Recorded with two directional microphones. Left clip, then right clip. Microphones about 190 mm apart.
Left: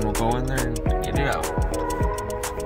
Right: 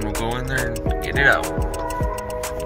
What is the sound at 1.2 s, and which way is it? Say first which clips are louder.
Speech: right 11 dB; 5° left (ahead or behind).